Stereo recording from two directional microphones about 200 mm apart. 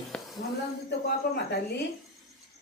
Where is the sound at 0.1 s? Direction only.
5° left (ahead or behind).